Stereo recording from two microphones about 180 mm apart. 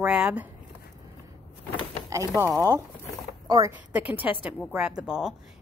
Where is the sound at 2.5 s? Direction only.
15° right (ahead or behind).